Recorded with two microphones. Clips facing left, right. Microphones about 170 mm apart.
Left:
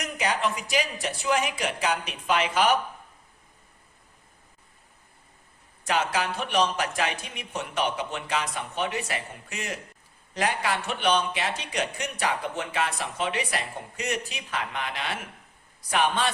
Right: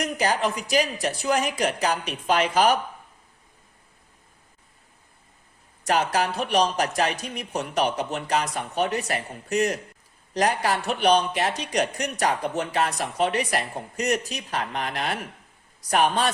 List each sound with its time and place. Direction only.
0.0 s speech: 35° right (ahead or behind)
5.8 s speech: 40° right (ahead or behind)